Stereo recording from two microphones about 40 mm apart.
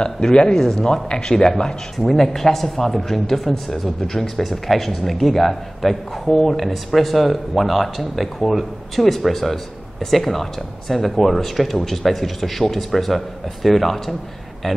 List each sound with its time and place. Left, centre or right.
0.0 s speech: left
2.0 s a man's voice: centre